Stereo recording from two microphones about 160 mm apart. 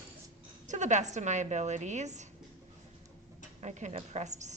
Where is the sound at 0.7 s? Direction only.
50° right (ahead or behind).